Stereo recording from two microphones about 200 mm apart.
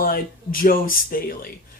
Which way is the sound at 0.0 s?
45° left (ahead or behind).